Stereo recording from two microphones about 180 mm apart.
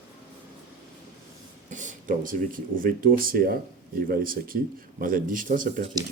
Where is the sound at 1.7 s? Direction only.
45° right (ahead or behind).